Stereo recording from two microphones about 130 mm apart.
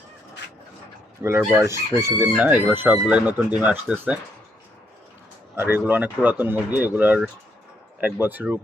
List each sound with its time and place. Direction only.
1.2 s speech: 20° right (ahead or behind)
1.5 s chicken: 20° right (ahead or behind)
5.5 s chicken: 15° right (ahead or behind)